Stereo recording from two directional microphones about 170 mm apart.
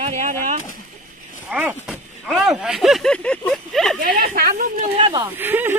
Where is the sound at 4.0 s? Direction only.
55° right (ahead or behind).